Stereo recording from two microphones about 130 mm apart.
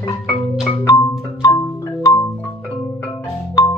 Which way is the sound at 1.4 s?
25° left (ahead or behind).